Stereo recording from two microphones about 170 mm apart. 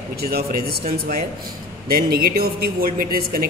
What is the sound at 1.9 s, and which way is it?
A man's voice, 60° right (ahead or behind).